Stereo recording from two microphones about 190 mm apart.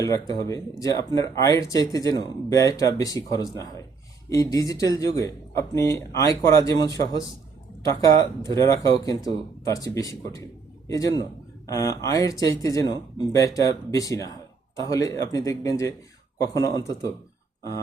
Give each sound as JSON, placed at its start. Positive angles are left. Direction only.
{"t": 0.0, "sound": "a man's voice", "side_deg": 20}